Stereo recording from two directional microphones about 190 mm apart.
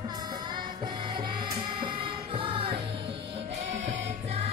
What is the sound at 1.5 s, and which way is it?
Music, 25° right (ahead or behind).